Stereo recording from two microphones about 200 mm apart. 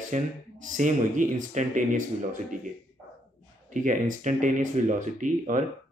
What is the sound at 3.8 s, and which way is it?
Speech, 40° right (ahead or behind).